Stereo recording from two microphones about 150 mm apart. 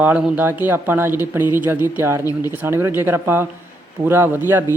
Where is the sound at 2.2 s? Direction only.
25° left (ahead or behind).